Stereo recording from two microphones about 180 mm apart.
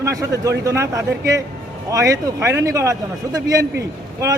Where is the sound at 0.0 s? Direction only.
20° right (ahead or behind).